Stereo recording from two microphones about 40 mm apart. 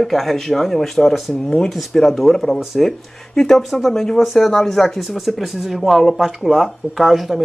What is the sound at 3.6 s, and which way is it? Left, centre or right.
Speech, centre.